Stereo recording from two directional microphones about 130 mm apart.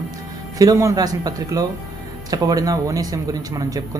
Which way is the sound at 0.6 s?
25° right (ahead or behind).